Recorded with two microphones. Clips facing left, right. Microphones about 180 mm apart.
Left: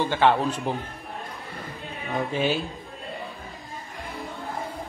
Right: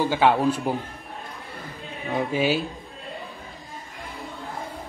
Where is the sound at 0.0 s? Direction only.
10° right (ahead or behind).